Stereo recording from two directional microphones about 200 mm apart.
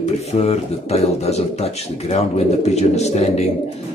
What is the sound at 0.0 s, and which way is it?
Speech, 30° left (ahead or behind).